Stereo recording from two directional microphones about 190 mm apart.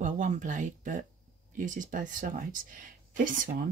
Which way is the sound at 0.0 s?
45° right (ahead or behind).